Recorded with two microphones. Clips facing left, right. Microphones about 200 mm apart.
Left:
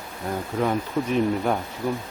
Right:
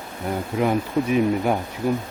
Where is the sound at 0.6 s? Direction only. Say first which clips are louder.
Right 3 dB; 10° right (ahead or behind).